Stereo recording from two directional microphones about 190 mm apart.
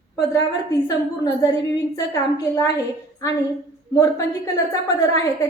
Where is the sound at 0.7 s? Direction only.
20° left (ahead or behind).